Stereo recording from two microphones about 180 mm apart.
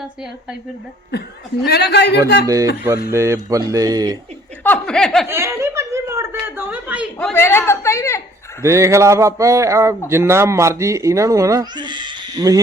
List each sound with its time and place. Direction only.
1.6 s a man's voice: 65° left (ahead or behind)
2.5 s speech: 15° right (ahead or behind)
4.6 s speech: 5° left (ahead or behind)
5.3 s speech: 15° right (ahead or behind)
7.2 s a man's voice: 10° left (ahead or behind)
8.6 s speech: 15° right (ahead or behind)